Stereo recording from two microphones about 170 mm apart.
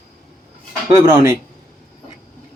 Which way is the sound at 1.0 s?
20° right (ahead or behind).